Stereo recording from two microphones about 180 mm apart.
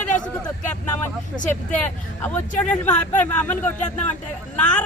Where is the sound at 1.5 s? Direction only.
10° left (ahead or behind).